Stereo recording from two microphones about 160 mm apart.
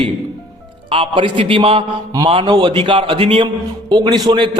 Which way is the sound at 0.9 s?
35° right (ahead or behind).